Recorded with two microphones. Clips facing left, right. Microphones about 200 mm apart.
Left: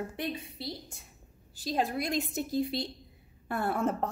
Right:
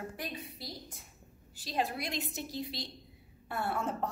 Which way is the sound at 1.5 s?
40° left (ahead or behind).